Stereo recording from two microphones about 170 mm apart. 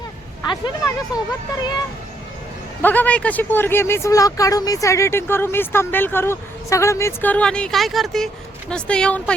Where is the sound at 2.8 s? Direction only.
10° left (ahead or behind).